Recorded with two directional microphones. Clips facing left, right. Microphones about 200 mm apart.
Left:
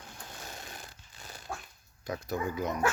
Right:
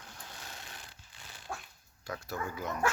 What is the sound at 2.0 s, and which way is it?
Speech, 20° left (ahead or behind).